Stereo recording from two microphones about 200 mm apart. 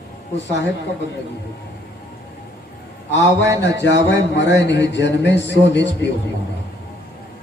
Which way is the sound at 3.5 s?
60° left (ahead or behind).